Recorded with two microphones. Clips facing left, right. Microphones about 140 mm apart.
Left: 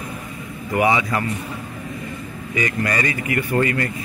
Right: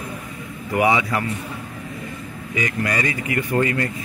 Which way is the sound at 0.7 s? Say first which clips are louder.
Even; 15° right (ahead or behind).